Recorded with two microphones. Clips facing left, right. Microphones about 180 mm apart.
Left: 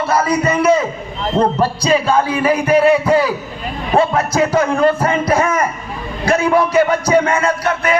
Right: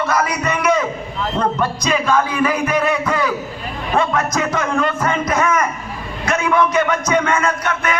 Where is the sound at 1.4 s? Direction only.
30° left (ahead or behind).